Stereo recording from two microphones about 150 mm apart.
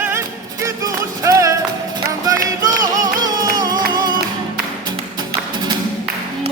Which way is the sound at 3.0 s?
25° right (ahead or behind).